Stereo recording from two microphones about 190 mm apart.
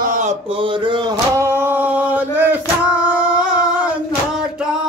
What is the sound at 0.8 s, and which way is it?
Male singing, 20° right (ahead or behind).